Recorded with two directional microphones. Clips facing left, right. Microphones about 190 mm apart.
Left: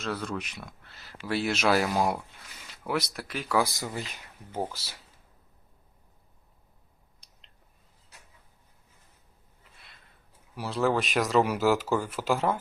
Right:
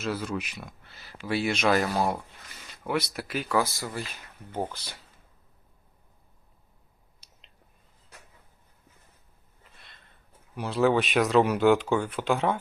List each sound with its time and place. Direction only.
0.0 s speech: 5° right (ahead or behind); by 2.1 s 10° left (ahead or behind)
2.8 s speech: centre (ahead or behind)
3.6 s speech: 15° left (ahead or behind)
4.5 s speech: 5° left (ahead or behind)
7.2 s a sound: 5° right (ahead or behind)
10.5 s speech: centre (ahead or behind)